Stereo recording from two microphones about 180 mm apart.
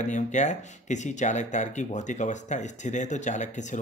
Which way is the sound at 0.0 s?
40° left (ahead or behind).